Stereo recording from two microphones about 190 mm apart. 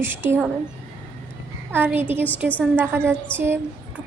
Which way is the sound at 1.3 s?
10° right (ahead or behind).